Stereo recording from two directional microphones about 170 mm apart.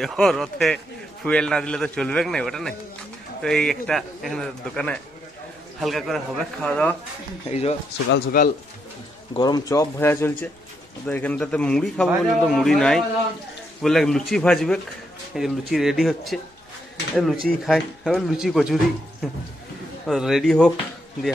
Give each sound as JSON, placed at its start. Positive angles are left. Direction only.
{"t": 0.0, "sound": "speech", "side_deg": 0}
{"t": 7.4, "sound": "speech", "side_deg": 35}
{"t": 8.1, "sound": "speech", "side_deg": 60}
{"t": 9.4, "sound": "speech", "side_deg": 20}
{"t": 20.1, "sound": "speech", "side_deg": 0}